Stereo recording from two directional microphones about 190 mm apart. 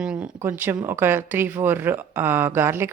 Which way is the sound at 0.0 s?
5° right (ahead or behind).